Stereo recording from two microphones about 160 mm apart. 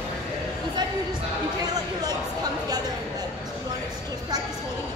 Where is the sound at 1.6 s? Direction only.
25° right (ahead or behind).